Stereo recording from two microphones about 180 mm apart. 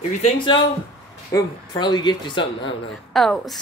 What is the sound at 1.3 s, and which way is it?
Speech, 20° left (ahead or behind).